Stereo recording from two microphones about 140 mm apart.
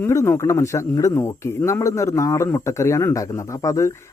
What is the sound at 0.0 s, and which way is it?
Speech, 20° left (ahead or behind).